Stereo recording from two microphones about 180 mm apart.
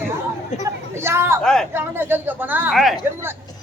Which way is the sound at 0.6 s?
15° right (ahead or behind).